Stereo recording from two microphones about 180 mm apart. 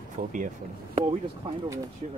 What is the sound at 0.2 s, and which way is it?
Speech, 45° right (ahead or behind).